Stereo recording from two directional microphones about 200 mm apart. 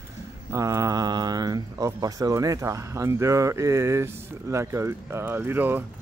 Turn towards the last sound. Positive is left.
turn(degrees=-10)  # may be behind; listen again after turning